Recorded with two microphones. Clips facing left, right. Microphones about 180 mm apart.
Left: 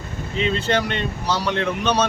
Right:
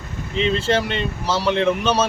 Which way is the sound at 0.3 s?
35° right (ahead or behind).